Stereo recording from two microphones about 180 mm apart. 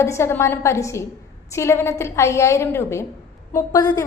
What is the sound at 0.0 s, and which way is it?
A woman's voice, 15° left (ahead or behind).